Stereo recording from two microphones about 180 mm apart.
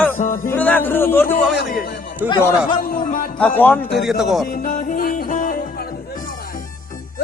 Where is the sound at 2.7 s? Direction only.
55° left (ahead or behind).